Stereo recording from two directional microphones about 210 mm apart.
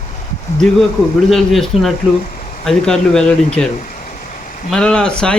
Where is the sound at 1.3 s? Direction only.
Centre (ahead or behind).